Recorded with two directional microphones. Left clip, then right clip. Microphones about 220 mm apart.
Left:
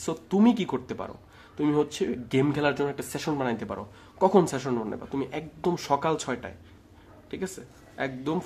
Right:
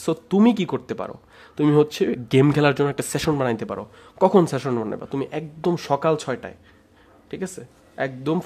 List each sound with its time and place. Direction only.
0.0 s speech: 25° right (ahead or behind)